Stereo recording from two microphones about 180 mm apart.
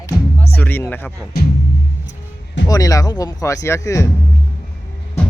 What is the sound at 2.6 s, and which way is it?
Speech, 20° left (ahead or behind).